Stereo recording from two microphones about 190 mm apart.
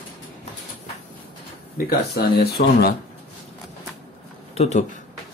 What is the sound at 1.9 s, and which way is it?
Speech, 55° left (ahead or behind).